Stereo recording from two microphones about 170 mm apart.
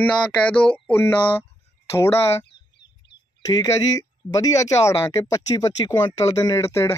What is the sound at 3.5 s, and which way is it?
Speech, 20° left (ahead or behind).